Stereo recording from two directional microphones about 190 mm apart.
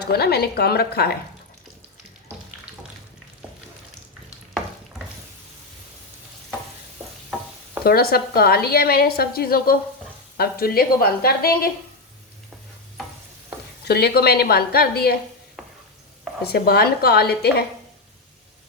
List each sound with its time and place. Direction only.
0.0 s a woman's voice: 55° left (ahead or behind)
7.9 s a woman's voice: 50° left (ahead or behind)
13.8 s a woman's voice: 55° left (ahead or behind)
16.4 s a woman's voice: 55° left (ahead or behind)